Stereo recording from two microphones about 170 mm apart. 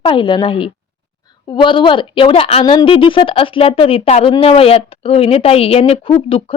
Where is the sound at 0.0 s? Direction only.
30° left (ahead or behind).